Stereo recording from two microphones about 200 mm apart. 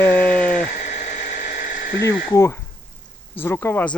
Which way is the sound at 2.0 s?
15° left (ahead or behind).